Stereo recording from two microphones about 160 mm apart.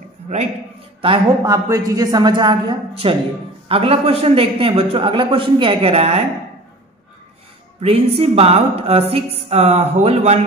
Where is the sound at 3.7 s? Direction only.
35° right (ahead or behind).